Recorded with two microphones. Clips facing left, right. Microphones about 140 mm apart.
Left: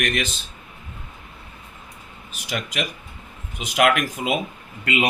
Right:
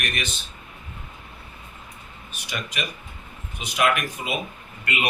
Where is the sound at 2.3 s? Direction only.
90° left.